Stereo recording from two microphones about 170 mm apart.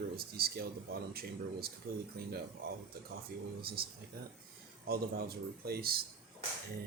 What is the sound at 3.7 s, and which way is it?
Speech, 65° right (ahead or behind).